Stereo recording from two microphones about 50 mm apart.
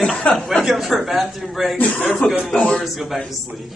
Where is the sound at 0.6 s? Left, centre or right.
Centre.